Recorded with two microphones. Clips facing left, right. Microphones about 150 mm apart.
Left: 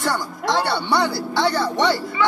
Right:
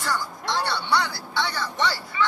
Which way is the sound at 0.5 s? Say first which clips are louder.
Left 5 dB; 80° left.